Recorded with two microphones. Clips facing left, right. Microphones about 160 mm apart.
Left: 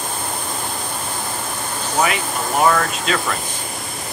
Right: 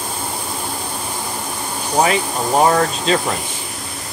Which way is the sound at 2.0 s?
35° right (ahead or behind).